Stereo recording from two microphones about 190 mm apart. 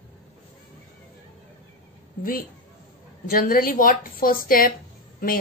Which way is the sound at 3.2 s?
50° left (ahead or behind).